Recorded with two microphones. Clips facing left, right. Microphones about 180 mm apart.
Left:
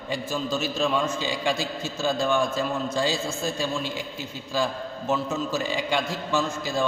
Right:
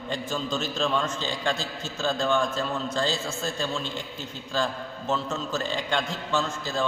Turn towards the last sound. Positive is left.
turn(degrees=10)  # may be behind; listen again after turning